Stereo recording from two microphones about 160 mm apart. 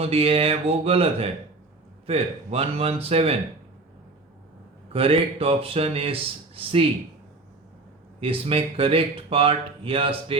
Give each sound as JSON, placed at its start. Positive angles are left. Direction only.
{"t": 0.0, "sound": "speech", "side_deg": -35}
{"t": 4.9, "sound": "speech", "side_deg": -35}
{"t": 8.2, "sound": "speech", "side_deg": -35}